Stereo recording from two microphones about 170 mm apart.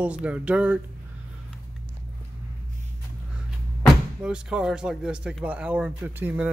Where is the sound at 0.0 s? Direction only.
10° right (ahead or behind).